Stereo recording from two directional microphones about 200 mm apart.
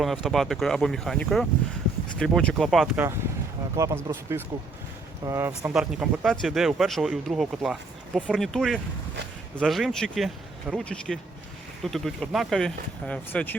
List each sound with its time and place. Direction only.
0.0 s speech: centre (ahead or behind)